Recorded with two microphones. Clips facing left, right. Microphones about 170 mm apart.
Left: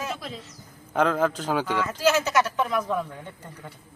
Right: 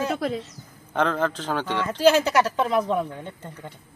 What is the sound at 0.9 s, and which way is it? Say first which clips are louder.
Speech: left 1 dB; 5° left (ahead or behind).